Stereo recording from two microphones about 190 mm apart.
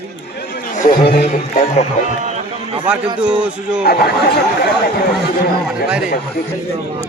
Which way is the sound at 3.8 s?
55° left (ahead or behind).